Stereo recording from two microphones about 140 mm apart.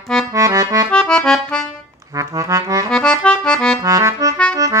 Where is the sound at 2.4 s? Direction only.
20° right (ahead or behind).